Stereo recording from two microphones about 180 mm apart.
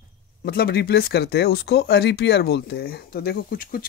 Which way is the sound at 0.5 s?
60° left (ahead or behind).